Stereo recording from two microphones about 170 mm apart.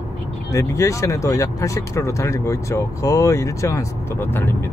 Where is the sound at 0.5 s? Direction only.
15° left (ahead or behind).